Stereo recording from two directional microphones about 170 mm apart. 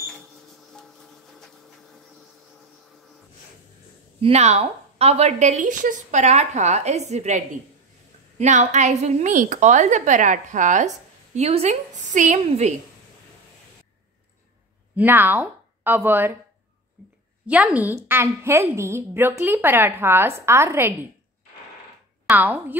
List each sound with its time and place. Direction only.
4.2 s a woman's voice: 40° right (ahead or behind)
15.0 s speech: 10° right (ahead or behind)
17.5 s a woman's voice: 10° right (ahead or behind)
22.2 s a woman's voice: 10° right (ahead or behind)